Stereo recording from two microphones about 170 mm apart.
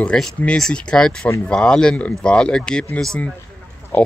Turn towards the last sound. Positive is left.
turn(degrees=10)  # may be behind; listen again after turning